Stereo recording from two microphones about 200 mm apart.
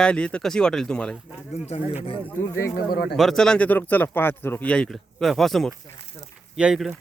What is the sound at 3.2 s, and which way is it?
Speech, centre (ahead or behind).